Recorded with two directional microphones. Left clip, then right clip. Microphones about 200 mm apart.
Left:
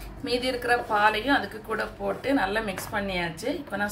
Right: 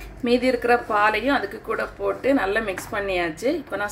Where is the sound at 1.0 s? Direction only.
35° right (ahead or behind).